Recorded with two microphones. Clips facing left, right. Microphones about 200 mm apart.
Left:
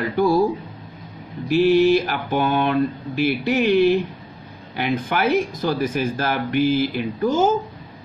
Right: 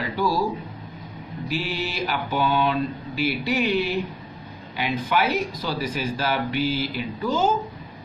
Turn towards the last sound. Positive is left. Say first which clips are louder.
# left 4 dB
turn(degrees=50)  # may be behind; listen again after turning